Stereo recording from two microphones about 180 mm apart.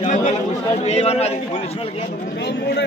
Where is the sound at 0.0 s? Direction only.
45° left (ahead or behind).